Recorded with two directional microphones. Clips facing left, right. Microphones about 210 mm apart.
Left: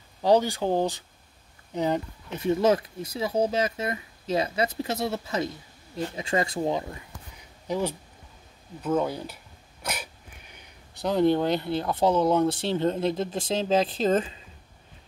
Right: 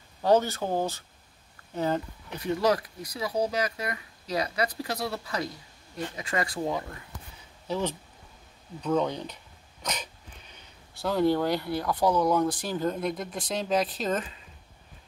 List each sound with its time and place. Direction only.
0.2 s speech: 15° left (ahead or behind)
10.5 s speech: 20° left (ahead or behind)